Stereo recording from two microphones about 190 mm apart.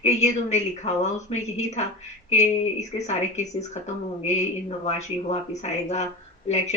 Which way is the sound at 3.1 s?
35° left (ahead or behind).